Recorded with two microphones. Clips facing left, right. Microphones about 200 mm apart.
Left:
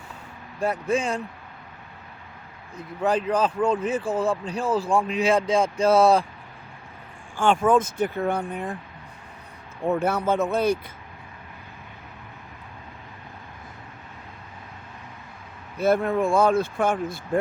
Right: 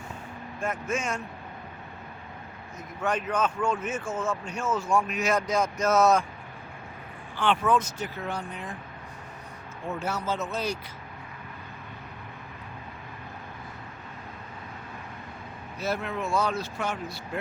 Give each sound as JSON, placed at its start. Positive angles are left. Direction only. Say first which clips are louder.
{"t": 0.6, "sound": "speech", "louder": "left 6 dB", "side_deg": 35}
{"t": 2.7, "sound": "speech", "louder": "left 6 dB", "side_deg": 35}
{"t": 7.3, "sound": "speech", "louder": "left 5 dB", "side_deg": 45}
{"t": 9.8, "sound": "speech", "louder": "left 8 dB", "side_deg": 55}
{"t": 15.8, "sound": "speech", "louder": "left 10 dB", "side_deg": 50}